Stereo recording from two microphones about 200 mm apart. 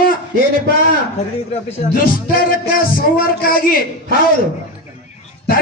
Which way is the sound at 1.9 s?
45° left (ahead or behind).